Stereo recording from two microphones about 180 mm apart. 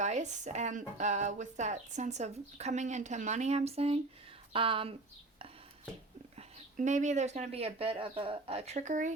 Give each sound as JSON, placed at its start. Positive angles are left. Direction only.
{"t": 0.0, "sound": "speech", "side_deg": -40}
{"t": 6.3, "sound": "speech", "side_deg": -40}